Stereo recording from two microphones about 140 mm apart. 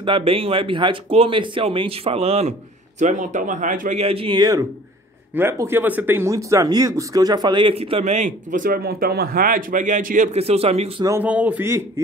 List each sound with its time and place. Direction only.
0.0 s speech: 40° right (ahead or behind)
3.0 s speech: 60° right (ahead or behind)
4.0 s speech: 45° right (ahead or behind)
4.4 s speech: 25° right (ahead or behind)
7.7 s a man's voice: 45° right (ahead or behind); by 10.4 s 65° right (ahead or behind)
10.4 s speech: 45° right (ahead or behind)
11.1 s speech: 15° right (ahead or behind)